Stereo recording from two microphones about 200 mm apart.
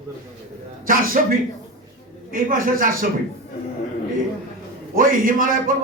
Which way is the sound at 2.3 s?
45° right (ahead or behind).